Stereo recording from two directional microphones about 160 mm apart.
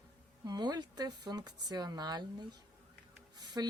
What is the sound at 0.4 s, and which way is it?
Speech, 25° right (ahead or behind).